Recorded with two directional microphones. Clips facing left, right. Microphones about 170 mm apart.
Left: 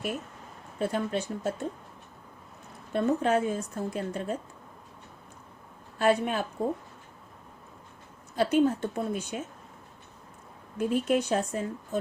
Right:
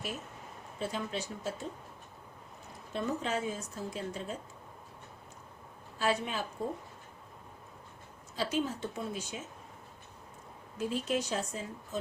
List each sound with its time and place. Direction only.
0.8 s a woman's voice: 55° left (ahead or behind)
2.9 s a woman's voice: 55° left (ahead or behind)
6.0 s a woman's voice: 55° left (ahead or behind)
8.4 s a woman's voice: 55° left (ahead or behind)
10.8 s a woman's voice: 55° left (ahead or behind)